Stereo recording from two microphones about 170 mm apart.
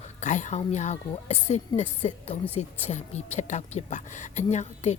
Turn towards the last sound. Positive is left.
turn(degrees=40)  # may be behind; listen again after turning